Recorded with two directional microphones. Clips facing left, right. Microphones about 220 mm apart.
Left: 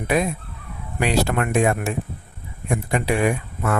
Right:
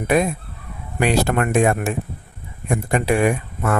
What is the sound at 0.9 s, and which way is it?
Speech, 50° right (ahead or behind).